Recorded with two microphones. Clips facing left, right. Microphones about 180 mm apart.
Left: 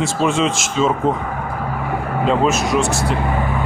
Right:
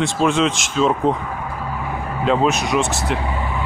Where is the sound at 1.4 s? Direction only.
60° left (ahead or behind).